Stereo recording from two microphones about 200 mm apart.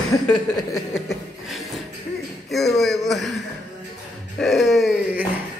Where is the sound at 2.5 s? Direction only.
Centre (ahead or behind).